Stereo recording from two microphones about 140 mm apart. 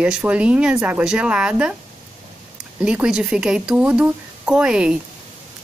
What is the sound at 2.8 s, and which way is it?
Speech, 5° right (ahead or behind).